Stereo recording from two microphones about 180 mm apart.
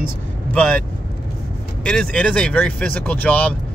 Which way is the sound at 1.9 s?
5° left (ahead or behind).